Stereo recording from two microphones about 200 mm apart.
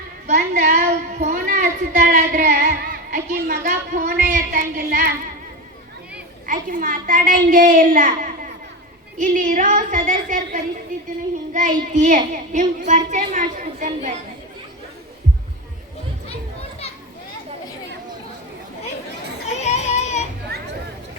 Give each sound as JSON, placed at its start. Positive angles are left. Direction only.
{"t": 0.3, "sound": "child singing", "side_deg": -40}
{"t": 4.2, "sound": "a child's voice", "side_deg": -40}
{"t": 6.4, "sound": "a child's voice", "side_deg": -45}
{"t": 19.6, "sound": "a sound", "side_deg": 35}